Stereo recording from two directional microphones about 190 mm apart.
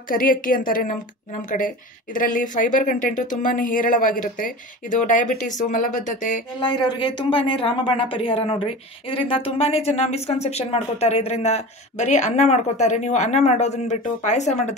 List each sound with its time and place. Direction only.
0.1 s speech: 45° left (ahead or behind)
6.6 s speech: 25° left (ahead or behind)